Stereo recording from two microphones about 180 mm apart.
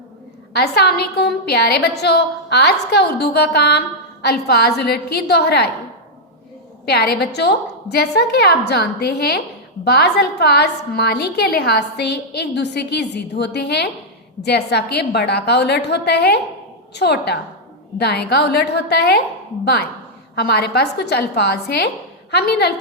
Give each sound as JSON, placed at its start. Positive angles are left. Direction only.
{"t": 0.5, "sound": "a woman's voice", "side_deg": 65}
{"t": 6.8, "sound": "a woman's voice", "side_deg": 60}